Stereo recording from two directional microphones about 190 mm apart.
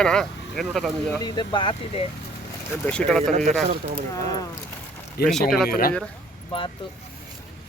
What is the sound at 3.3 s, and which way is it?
Speech, 40° right (ahead or behind).